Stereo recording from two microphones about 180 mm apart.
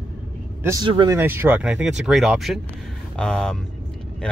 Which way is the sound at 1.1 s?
10° right (ahead or behind).